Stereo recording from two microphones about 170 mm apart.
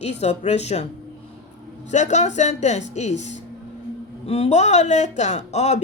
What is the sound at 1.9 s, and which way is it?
A woman's voice, 45° left (ahead or behind).